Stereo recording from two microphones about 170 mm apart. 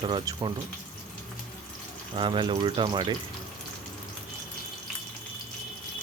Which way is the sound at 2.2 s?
30° right (ahead or behind).